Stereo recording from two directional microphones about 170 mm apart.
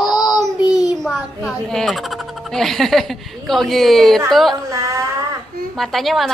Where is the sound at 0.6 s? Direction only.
20° left (ahead or behind).